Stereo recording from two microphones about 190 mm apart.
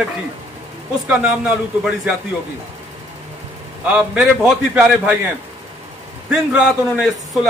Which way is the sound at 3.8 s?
5° right (ahead or behind).